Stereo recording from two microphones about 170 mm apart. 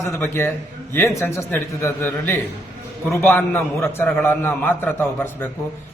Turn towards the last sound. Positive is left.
turn(degrees=15)  # may be behind; listen again after turning